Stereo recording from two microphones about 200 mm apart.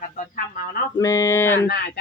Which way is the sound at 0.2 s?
45° left (ahead or behind).